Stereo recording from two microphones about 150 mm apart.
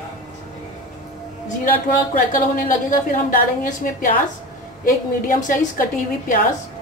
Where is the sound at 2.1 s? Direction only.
65° left (ahead or behind).